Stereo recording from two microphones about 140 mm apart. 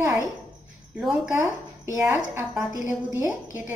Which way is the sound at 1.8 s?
15° right (ahead or behind).